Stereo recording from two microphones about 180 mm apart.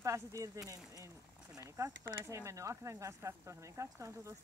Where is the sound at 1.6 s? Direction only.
15° right (ahead or behind).